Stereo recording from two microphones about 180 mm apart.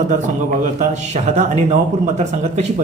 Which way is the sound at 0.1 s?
45° right (ahead or behind).